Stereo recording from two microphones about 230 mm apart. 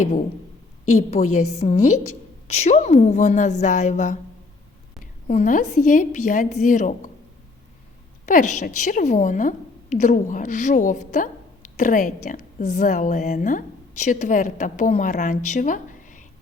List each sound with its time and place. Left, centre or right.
0.9 s a woman's voice: left
5.3 s a woman's voice: left
8.3 s a woman's voice: left
15.4 s a sound: left